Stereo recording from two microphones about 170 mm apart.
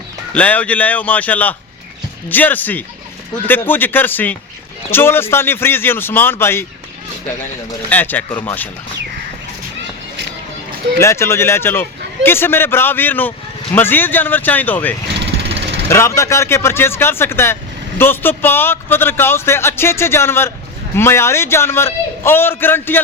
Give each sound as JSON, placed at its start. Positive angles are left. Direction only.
{"t": 0.3, "sound": "speech", "side_deg": 10}
{"t": 7.9, "sound": "speech", "side_deg": 10}
{"t": 11.0, "sound": "speech", "side_deg": 15}
{"t": 15.5, "sound": "vehicle", "side_deg": -85}
{"t": 15.9, "sound": "speech", "side_deg": 15}